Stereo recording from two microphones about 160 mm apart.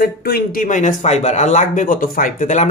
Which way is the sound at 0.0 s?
65° left (ahead or behind).